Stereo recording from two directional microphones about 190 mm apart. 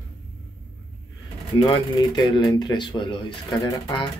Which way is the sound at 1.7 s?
25° left (ahead or behind).